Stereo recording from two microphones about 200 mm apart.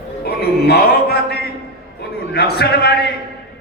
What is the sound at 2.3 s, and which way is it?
Speech, 55° left (ahead or behind).